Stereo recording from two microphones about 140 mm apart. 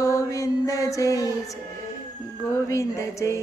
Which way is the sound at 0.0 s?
20° left (ahead or behind).